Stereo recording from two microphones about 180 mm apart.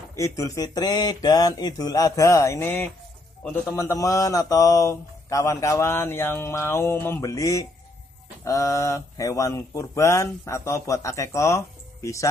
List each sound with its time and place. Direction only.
0.1 s speech: 15° left (ahead or behind)